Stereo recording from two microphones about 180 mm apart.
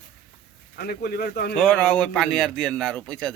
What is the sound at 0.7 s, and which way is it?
Speech, 60° left (ahead or behind).